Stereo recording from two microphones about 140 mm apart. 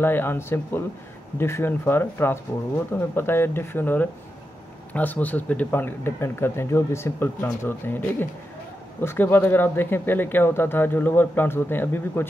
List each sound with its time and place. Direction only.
0.0 s speech: 15° left (ahead or behind)